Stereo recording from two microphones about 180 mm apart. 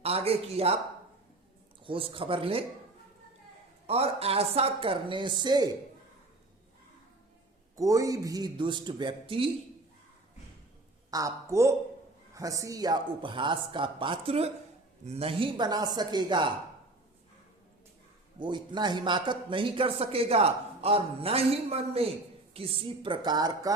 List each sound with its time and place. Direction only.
0.0 s a man's voice: 35° right (ahead or behind)
1.8 s a man's voice: 30° right (ahead or behind)
3.8 s a man's voice: 35° right (ahead or behind)
7.8 s a man's voice: 20° right (ahead or behind)
11.1 s a woman's voice: 20° right (ahead or behind)
18.3 s a man's voice: 25° right (ahead or behind)